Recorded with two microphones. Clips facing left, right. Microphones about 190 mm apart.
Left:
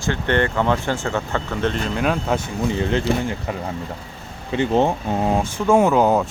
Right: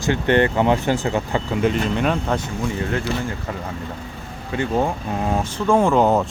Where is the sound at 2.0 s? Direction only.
5° left (ahead or behind).